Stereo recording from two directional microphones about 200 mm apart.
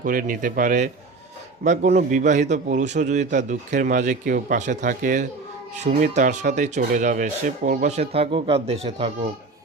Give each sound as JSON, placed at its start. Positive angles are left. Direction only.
{"t": 0.0, "sound": "a man's voice", "side_deg": -45}